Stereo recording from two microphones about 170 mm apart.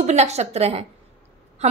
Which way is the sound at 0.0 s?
40° right (ahead or behind).